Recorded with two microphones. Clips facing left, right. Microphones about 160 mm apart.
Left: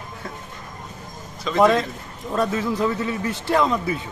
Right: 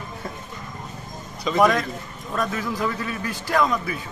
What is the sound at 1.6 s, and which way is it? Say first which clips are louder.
Speech: left 3 dB; 25° left (ahead or behind).